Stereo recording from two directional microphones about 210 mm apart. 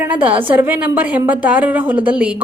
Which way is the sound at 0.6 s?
10° right (ahead or behind).